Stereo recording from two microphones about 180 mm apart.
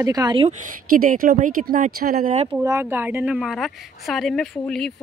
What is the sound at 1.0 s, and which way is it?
Speech, 50° right (ahead or behind).